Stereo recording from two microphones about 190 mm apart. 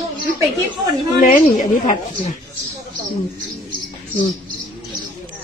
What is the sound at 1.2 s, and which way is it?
Speech, 40° left (ahead or behind).